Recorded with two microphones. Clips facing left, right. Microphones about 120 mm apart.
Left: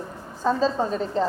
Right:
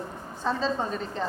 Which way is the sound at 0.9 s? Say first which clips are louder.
Left 7 dB; 35° left (ahead or behind).